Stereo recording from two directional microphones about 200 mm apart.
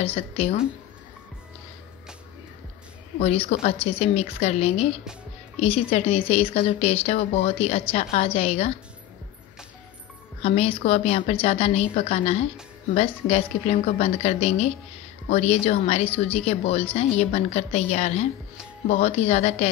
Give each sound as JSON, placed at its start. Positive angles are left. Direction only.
{"t": 0.0, "sound": "speech", "side_deg": 30}
{"t": 3.2, "sound": "speech", "side_deg": 30}
{"t": 10.4, "sound": "speech", "side_deg": 30}